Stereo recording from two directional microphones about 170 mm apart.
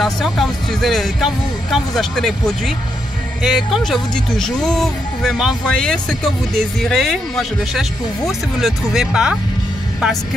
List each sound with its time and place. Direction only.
0.0 s speech: centre (ahead or behind)